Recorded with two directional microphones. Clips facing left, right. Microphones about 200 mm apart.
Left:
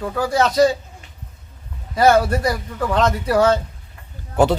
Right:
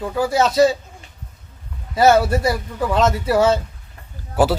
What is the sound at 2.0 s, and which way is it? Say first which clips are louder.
Speech: right 1 dB; 5° right (ahead or behind).